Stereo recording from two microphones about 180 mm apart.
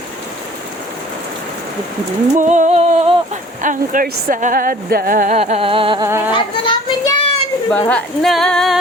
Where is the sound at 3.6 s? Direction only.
45° right (ahead or behind); by 6.1 s 25° right (ahead or behind).